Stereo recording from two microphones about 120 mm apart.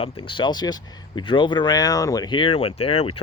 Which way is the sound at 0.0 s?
45° left (ahead or behind).